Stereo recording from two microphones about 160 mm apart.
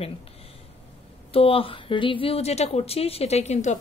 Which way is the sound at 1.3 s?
35° left (ahead or behind).